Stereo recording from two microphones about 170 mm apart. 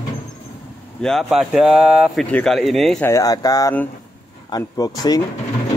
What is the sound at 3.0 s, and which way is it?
Speech, 20° left (ahead or behind).